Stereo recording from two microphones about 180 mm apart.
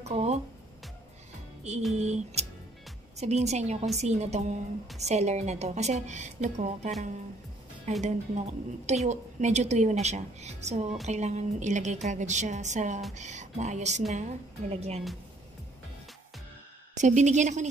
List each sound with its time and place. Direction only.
0.0 s speech: 35° right (ahead or behind)
2.0 s a woman's voice: 35° right (ahead or behind)
8.0 s a woman's voice: 40° right (ahead or behind)
16.9 s a woman's voice: 40° right (ahead or behind)